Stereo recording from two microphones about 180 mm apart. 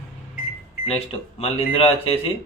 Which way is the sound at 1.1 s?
35° left (ahead or behind).